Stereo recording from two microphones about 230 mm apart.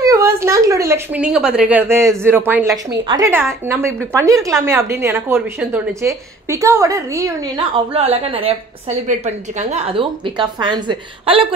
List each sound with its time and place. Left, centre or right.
0.0 s a woman's voice: centre